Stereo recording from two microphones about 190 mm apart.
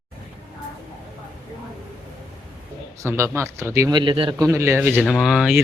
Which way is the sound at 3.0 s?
15° right (ahead or behind).